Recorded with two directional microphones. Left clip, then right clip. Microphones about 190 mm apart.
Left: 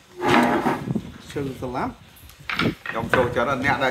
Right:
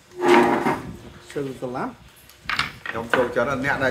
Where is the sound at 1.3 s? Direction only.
25° left (ahead or behind).